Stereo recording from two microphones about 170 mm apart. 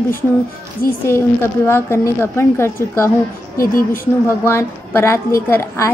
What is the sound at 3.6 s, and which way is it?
Speech, 55° left (ahead or behind).